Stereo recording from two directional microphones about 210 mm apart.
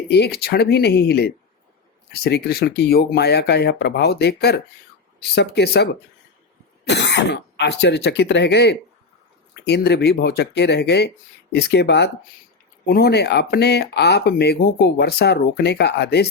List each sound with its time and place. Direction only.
0.1 s speech: 50° left (ahead or behind)